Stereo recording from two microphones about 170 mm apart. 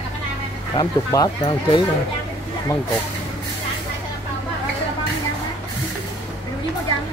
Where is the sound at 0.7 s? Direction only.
20° left (ahead or behind).